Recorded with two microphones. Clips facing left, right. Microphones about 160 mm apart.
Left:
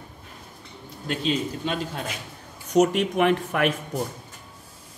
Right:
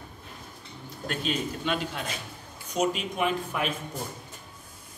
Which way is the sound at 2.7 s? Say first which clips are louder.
Left 8 dB; 75° left (ahead or behind).